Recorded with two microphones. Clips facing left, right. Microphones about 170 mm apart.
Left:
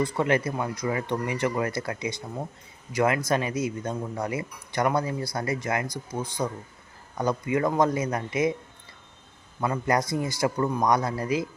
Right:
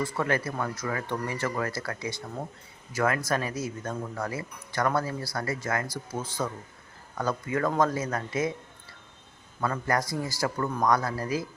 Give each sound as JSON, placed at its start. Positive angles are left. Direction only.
{"t": 0.0, "sound": "speech", "side_deg": 20}
{"t": 9.6, "sound": "speech", "side_deg": 15}